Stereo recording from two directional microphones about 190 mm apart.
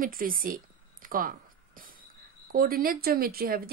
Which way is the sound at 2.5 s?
50° right (ahead or behind).